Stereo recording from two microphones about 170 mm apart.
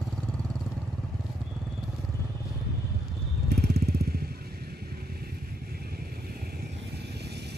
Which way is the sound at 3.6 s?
70° right (ahead or behind).